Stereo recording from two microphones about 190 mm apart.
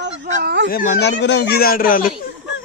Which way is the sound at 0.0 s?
60° right (ahead or behind).